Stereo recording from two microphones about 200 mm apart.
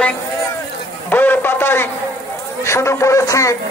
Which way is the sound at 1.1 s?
10° left (ahead or behind).